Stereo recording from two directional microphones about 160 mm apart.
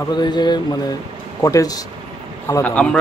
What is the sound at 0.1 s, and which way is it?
A man's voice, 25° left (ahead or behind).